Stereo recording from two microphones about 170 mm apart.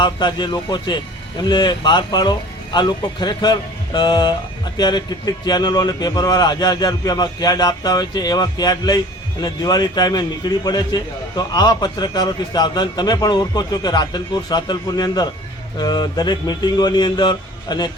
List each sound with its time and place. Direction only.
0.0 s speech: 25° left (ahead or behind)